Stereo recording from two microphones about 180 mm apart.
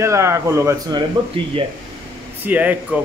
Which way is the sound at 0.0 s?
15° right (ahead or behind).